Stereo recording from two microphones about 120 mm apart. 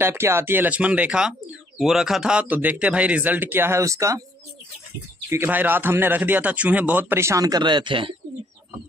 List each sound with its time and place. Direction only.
0.0 s speech: 20° right (ahead or behind)
5.3 s speech: 15° right (ahead or behind); by 8.1 s 45° right (ahead or behind)